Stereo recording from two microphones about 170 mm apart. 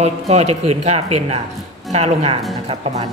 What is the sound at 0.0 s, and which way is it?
A woman's voice, 40° right (ahead or behind).